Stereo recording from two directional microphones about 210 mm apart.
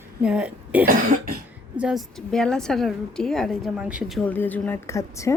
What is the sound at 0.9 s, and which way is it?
Cough, 40° right (ahead or behind).